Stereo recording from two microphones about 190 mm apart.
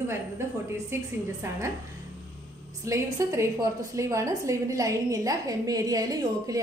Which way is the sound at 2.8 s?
15° right (ahead or behind).